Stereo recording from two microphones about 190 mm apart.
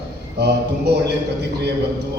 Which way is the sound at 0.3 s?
60° right (ahead or behind).